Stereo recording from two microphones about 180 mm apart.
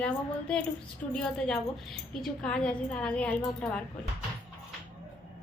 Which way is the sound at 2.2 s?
5° left (ahead or behind).